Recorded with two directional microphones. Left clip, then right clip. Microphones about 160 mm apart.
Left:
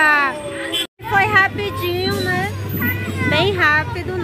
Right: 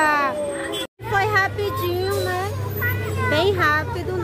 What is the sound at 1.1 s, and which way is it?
Vehicle, 5° left (ahead or behind).